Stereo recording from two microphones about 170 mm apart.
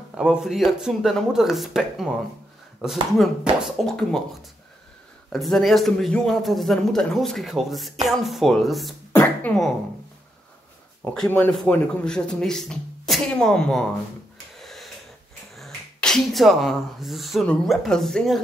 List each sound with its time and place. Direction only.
0.1 s a man's voice: 5° right (ahead or behind)
9.1 s beatboxing: 10° left (ahead or behind)
11.0 s a man's voice: 5° left (ahead or behind)
14.6 s wheeze: centre (ahead or behind)
15.5 s speech: centre (ahead or behind)